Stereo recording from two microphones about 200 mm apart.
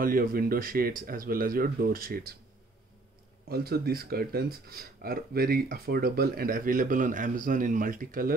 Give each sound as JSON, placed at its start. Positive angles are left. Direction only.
{"t": 0.0, "sound": "speech", "side_deg": -45}
{"t": 3.4, "sound": "speech", "side_deg": -50}